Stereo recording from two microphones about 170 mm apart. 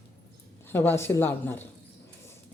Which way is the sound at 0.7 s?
15° left (ahead or behind).